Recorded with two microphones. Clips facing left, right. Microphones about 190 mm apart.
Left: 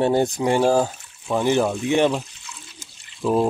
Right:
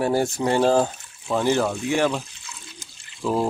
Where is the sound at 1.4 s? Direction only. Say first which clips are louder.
Left 2 dB; 15° left (ahead or behind).